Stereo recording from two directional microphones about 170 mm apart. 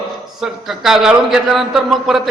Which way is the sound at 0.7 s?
Centre (ahead or behind).